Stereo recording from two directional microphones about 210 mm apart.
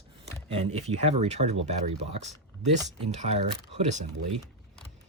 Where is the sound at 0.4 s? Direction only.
30° right (ahead or behind).